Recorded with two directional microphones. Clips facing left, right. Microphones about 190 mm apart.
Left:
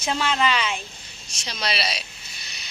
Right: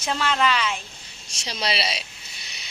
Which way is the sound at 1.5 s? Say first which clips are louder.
Right 1 dB; 30° right (ahead or behind).